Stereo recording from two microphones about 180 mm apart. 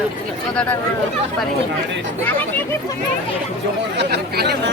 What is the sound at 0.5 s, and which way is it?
Speech, 5° left (ahead or behind).